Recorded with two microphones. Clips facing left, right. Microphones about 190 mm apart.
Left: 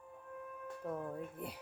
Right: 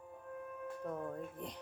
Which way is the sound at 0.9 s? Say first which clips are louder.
Left 2 dB; 5° left (ahead or behind).